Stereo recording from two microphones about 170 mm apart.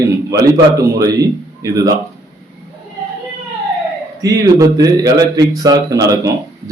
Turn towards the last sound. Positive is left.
turn(degrees=-20)  # may be behind; listen again after turning